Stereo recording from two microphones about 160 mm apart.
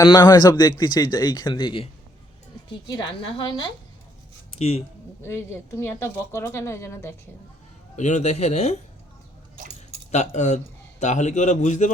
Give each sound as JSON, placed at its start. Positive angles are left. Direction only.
{"t": 0.2, "sound": "speech", "side_deg": 25}
{"t": 5.2, "sound": "speech", "side_deg": 15}
{"t": 7.9, "sound": "a man's voice", "side_deg": 45}
{"t": 10.1, "sound": "a man's voice", "side_deg": 45}